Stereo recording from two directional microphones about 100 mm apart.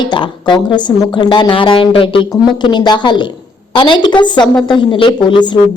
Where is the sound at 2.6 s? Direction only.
50° left (ahead or behind).